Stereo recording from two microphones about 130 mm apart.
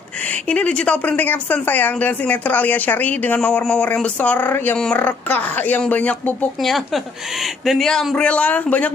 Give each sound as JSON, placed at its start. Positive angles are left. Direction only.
{"t": 0.2, "sound": "a woman's voice", "side_deg": 10}
{"t": 6.6, "sound": "speech", "side_deg": 0}